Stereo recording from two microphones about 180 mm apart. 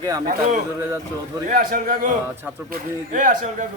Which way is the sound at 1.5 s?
50° right (ahead or behind).